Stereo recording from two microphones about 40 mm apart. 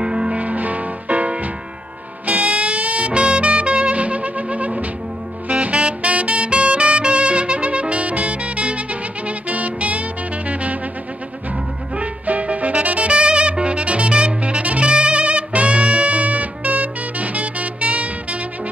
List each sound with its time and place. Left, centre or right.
0.0 s music: centre
0.4 s music: right
5.5 s saxophone: right
12.0 s music: right